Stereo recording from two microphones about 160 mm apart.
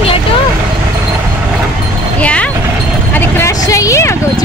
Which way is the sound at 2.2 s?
10° left (ahead or behind).